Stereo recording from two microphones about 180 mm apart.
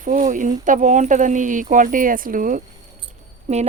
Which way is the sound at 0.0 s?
45° right (ahead or behind).